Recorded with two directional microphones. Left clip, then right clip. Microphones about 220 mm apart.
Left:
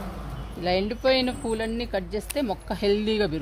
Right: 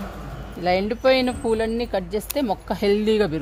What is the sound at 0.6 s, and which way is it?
Speech, 30° right (ahead or behind).